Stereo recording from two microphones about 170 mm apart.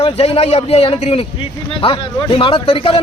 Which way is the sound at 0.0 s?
35° left (ahead or behind).